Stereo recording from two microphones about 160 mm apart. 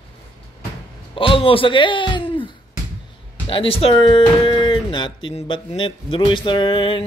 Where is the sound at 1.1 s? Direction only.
35° left (ahead or behind).